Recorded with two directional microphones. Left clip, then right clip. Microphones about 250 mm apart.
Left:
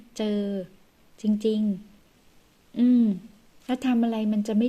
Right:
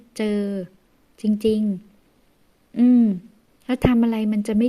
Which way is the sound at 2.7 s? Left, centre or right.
Right.